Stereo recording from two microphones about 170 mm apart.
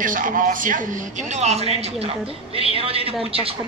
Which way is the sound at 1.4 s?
40° right (ahead or behind).